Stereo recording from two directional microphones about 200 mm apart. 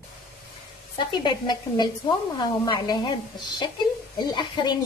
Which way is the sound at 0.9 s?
20° left (ahead or behind).